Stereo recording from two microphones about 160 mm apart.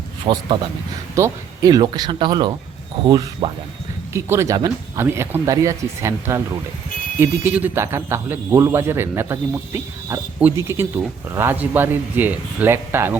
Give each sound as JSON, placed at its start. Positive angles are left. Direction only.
{"t": 0.3, "sound": "speech", "side_deg": -30}
{"t": 4.1, "sound": "speech", "side_deg": -15}